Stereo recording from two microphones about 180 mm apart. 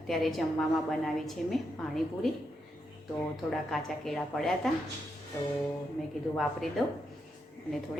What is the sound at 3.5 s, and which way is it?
A woman's voice, centre (ahead or behind).